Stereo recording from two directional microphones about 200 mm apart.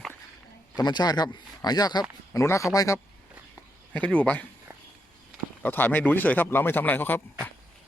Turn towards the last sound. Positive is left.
turn(degrees=10)  # may be behind; listen again after turning